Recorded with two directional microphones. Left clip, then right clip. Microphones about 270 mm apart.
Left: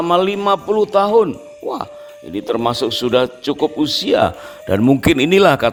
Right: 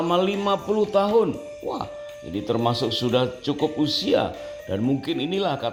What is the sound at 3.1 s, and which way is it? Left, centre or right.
Speech, left.